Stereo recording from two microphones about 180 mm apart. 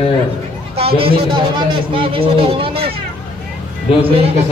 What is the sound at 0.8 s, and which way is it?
A man's voice, 30° right (ahead or behind).